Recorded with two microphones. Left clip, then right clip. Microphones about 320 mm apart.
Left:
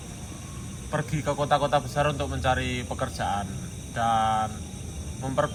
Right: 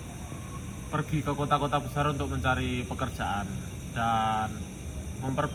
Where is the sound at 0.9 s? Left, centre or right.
Left.